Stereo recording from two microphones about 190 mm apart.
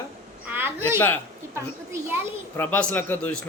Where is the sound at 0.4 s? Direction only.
10° right (ahead or behind).